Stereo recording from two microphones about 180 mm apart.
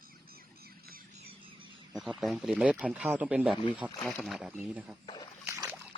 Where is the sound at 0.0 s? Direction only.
55° right (ahead or behind).